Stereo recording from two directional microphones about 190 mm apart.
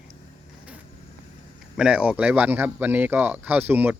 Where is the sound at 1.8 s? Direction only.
5° right (ahead or behind).